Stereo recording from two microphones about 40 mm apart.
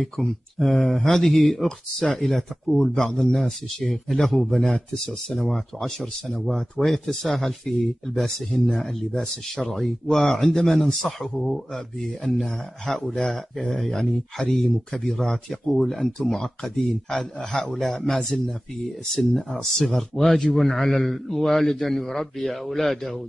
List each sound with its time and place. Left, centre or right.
0.0 s speech: centre
2.1 s speech: centre
2.8 s a man's voice: centre
3.1 s speech: centre